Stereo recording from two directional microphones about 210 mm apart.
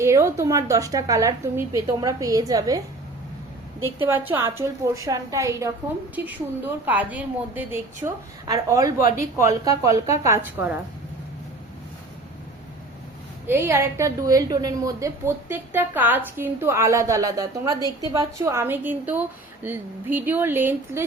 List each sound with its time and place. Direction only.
0.0 s a woman's voice: 15° right (ahead or behind)
4.1 s a woman's voice: 10° right (ahead or behind)
13.5 s a woman's voice: 10° right (ahead or behind)